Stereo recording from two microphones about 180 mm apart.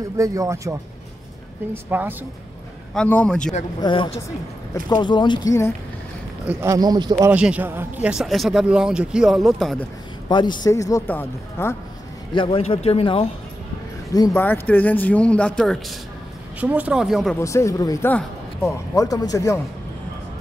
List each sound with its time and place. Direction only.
0.2 s speech: 15° right (ahead or behind)
2.9 s speech: 5° left (ahead or behind)
3.8 s speech: 30° left (ahead or behind)
6.4 s speech: 15° right (ahead or behind)
7.2 s speech: 5° right (ahead or behind)
10.2 s speech: 25° left (ahead or behind)
12.4 s a man's voice: 30° left (ahead or behind)
14.1 s speech: 15° left (ahead or behind)
16.5 s speech: 10° right (ahead or behind)
17.4 s speech: 15° left (ahead or behind)